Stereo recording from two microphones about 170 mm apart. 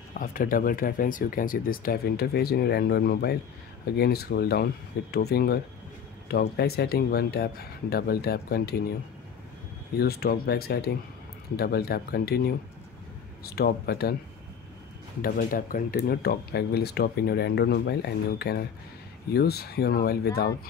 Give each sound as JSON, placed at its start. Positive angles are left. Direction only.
{"t": 0.2, "sound": "speech", "side_deg": 55}
{"t": 9.9, "sound": "speech", "side_deg": 65}
{"t": 15.2, "sound": "speech", "side_deg": 60}